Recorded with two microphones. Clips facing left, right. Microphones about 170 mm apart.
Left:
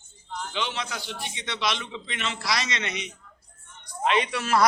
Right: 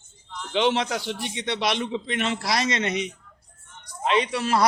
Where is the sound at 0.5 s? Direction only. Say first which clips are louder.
Right 11 dB; 70° right (ahead or behind); by 3.1 s 45° right (ahead or behind).